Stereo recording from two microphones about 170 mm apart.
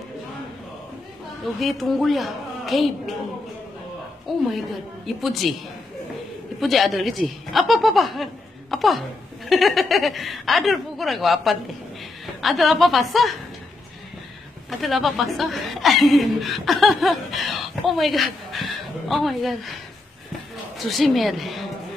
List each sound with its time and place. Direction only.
1.4 s a woman's voice: centre (ahead or behind)
4.5 s a woman's voice: centre (ahead or behind)
6.6 s a woman's voice: centre (ahead or behind)
14.7 s a woman's voice: centre (ahead or behind)